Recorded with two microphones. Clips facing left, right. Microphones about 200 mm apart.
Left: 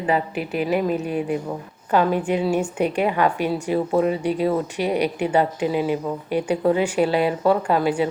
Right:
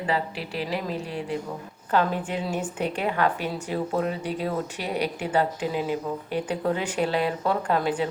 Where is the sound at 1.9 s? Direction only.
10° left (ahead or behind).